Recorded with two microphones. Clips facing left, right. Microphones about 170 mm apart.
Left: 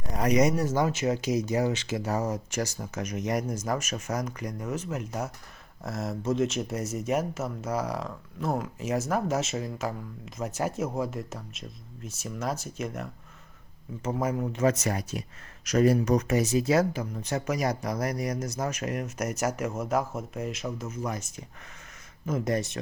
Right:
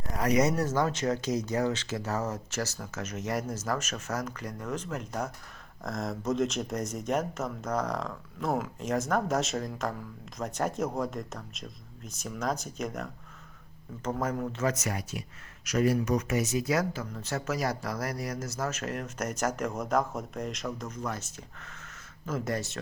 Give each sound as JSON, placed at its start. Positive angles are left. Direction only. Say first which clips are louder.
{"t": 0.2, "sound": "speech", "louder": "left 2 dB", "side_deg": 15}
{"t": 14.7, "sound": "speech", "louder": "left 5 dB", "side_deg": 35}